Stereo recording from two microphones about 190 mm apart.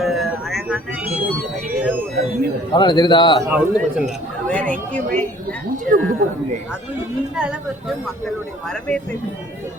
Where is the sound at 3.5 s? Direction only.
5° right (ahead or behind).